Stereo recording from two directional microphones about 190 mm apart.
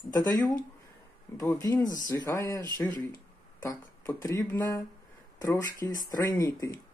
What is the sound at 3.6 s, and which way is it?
Speech, 15° left (ahead or behind).